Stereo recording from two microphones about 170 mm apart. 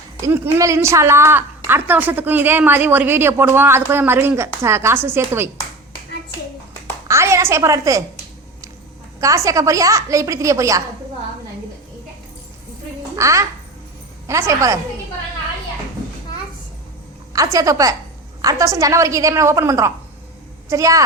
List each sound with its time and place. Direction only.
0.3 s a woman's voice: 15° right (ahead or behind)
7.1 s a woman's voice: 15° right (ahead or behind)
9.2 s a woman's voice: 20° right (ahead or behind)
13.1 s a child's voice: 20° right (ahead or behind)
17.3 s a woman's voice: 20° right (ahead or behind)